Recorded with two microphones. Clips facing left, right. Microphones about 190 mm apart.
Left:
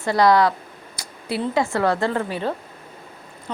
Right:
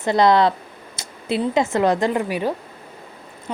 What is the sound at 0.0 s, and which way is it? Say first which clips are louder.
A woman's voice: right 1 dB; 20° right (ahead or behind).